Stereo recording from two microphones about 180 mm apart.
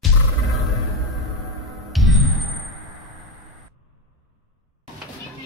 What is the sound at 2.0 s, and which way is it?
Music, centre (ahead or behind).